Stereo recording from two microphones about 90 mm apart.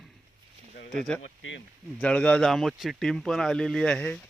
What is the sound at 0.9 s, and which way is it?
Speech, 5° left (ahead or behind).